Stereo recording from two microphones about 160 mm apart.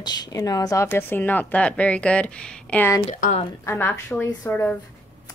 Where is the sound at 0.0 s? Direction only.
25° left (ahead or behind).